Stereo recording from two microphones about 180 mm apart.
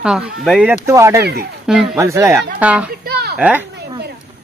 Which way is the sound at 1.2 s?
65° right (ahead or behind).